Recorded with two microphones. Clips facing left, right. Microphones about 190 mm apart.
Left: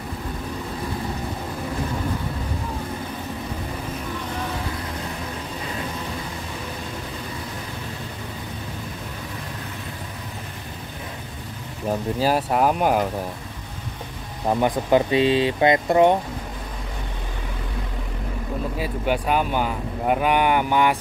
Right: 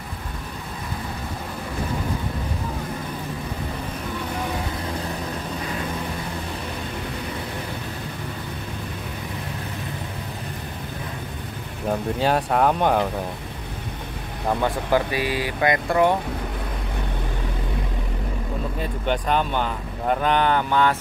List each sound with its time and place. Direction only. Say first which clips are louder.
11.9 s speech: even; 5° left (ahead or behind)
14.5 s speech: left 3 dB; 20° left (ahead or behind)
18.8 s speech: left 1 dB; 10° left (ahead or behind)